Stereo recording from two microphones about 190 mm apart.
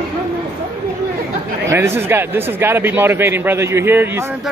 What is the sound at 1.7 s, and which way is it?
Speech, 10° right (ahead or behind).